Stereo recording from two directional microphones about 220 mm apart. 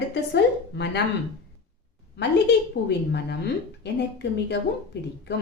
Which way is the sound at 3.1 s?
50° left (ahead or behind).